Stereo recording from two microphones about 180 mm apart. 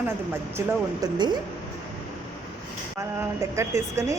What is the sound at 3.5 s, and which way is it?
Speech, 15° right (ahead or behind).